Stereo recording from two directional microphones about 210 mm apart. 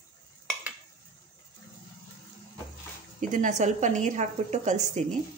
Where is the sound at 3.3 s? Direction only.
35° right (ahead or behind).